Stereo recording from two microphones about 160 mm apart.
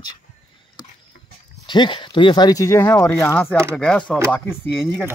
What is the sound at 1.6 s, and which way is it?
Speech, 30° left (ahead or behind).